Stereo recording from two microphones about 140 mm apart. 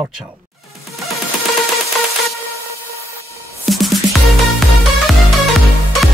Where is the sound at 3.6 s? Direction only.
Centre (ahead or behind).